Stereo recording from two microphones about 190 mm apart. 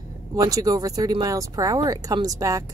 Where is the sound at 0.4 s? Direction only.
20° right (ahead or behind).